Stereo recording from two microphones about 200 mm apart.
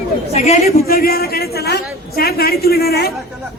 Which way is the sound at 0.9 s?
50° left (ahead or behind).